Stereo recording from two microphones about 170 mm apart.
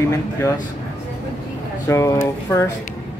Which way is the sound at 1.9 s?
15° left (ahead or behind).